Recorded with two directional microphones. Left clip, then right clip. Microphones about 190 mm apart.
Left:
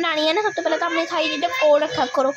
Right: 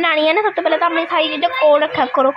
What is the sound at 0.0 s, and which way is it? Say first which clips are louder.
A woman's voice: right 5 dB; 5° right (ahead or behind).